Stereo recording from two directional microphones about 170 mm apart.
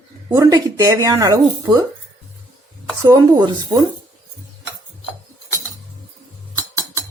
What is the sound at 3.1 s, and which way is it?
Speech, 25° right (ahead or behind).